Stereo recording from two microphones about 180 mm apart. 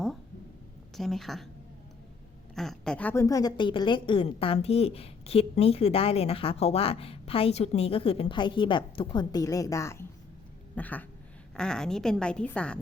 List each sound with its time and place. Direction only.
0.9 s a woman's voice: centre (ahead or behind)
2.6 s a woman's voice: 5° left (ahead or behind)